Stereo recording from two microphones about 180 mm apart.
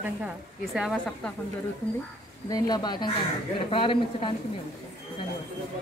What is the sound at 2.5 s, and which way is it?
Speech, 20° left (ahead or behind).